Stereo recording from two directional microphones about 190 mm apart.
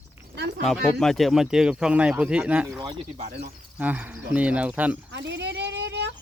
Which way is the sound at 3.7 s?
10° right (ahead or behind).